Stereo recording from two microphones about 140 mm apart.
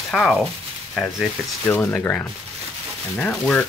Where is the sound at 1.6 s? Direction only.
15° left (ahead or behind).